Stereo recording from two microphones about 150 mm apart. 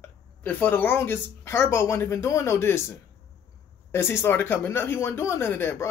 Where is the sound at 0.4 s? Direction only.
10° left (ahead or behind).